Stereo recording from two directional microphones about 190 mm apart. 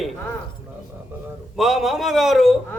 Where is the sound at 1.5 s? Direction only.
Centre (ahead or behind).